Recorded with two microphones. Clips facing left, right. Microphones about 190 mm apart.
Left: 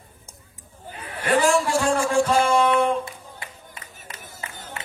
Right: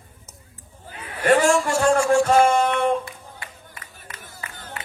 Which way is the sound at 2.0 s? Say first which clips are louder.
Right 3 dB; 30° left (ahead or behind).